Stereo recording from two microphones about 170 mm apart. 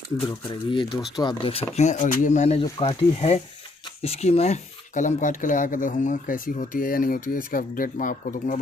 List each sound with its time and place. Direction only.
0.5 s speech: 30° left (ahead or behind)
1.8 s speech: 45° left (ahead or behind)